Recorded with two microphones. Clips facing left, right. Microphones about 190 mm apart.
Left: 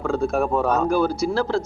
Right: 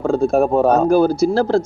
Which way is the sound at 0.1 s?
35° right (ahead or behind).